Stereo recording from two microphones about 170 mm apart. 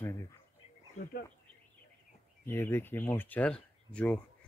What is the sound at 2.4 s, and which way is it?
Speech, 15° left (ahead or behind).